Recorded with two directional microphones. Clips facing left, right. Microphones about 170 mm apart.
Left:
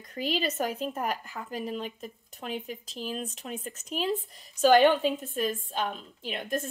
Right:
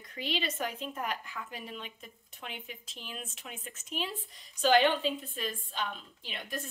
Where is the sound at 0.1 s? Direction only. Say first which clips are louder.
Left 5 dB; 45° left (ahead or behind).